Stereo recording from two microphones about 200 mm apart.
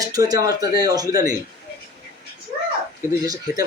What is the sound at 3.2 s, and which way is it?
Speech, 15° right (ahead or behind).